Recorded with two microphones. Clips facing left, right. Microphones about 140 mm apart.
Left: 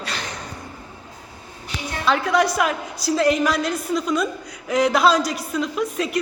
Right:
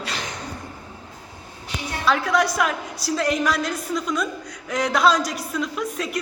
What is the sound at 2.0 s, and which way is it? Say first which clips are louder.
A woman's voice: left 2 dB; centre (ahead or behind).